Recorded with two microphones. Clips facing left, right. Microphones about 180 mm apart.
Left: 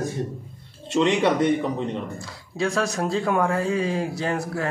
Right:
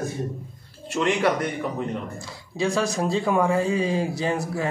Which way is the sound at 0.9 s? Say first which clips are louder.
Left 2 dB; 20° left (ahead or behind).